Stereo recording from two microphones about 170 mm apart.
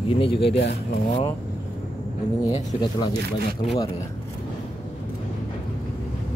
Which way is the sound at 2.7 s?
40° left (ahead or behind).